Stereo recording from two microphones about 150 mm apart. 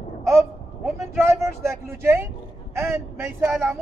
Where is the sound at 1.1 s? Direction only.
15° right (ahead or behind).